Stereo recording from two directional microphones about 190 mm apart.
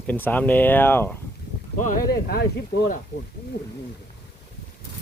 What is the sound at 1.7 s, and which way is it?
Speech, 45° left (ahead or behind).